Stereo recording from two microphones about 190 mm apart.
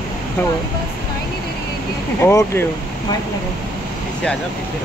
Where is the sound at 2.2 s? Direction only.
15° left (ahead or behind).